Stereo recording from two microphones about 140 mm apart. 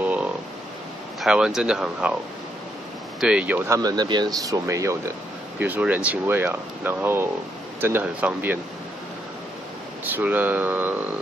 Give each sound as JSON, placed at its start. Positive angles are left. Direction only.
{"t": 0.0, "sound": "a sound", "side_deg": -10}
{"t": 1.2, "sound": "speech", "side_deg": -5}
{"t": 3.2, "sound": "speech", "side_deg": -5}
{"t": 3.7, "sound": "speech", "side_deg": -30}
{"t": 5.6, "sound": "speech", "side_deg": -10}
{"t": 10.0, "sound": "speech", "side_deg": -15}